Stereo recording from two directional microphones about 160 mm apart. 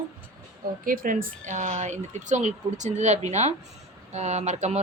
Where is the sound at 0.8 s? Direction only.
60° right (ahead or behind).